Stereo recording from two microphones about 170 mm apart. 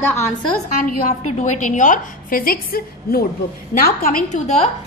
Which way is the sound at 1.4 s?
45° left (ahead or behind).